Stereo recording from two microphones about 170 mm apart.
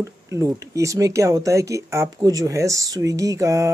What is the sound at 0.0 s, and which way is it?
Speech, 20° right (ahead or behind).